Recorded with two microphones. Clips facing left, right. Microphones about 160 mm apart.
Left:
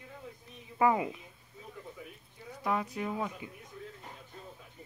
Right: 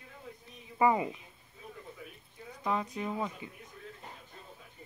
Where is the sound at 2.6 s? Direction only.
5° left (ahead or behind).